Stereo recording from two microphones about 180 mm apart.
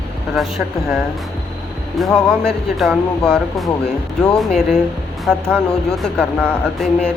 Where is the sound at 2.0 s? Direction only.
5° left (ahead or behind).